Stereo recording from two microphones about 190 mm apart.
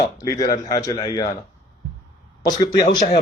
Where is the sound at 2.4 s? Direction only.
20° left (ahead or behind).